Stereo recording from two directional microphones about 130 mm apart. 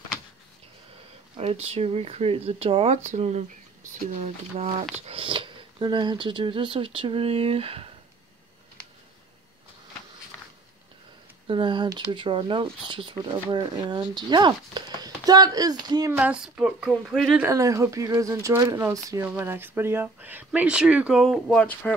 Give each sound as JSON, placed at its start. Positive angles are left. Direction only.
{"t": 1.3, "sound": "speech", "side_deg": -50}
{"t": 5.0, "sound": "speech", "side_deg": -45}
{"t": 11.4, "sound": "speech", "side_deg": -40}
{"t": 16.1, "sound": "speech", "side_deg": -10}
{"t": 17.5, "sound": "speech", "side_deg": -25}